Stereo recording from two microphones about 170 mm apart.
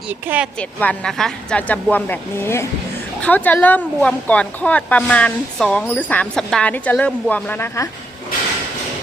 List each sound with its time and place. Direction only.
0.1 s speech: 10° right (ahead or behind)
0.8 s speech: 5° left (ahead or behind)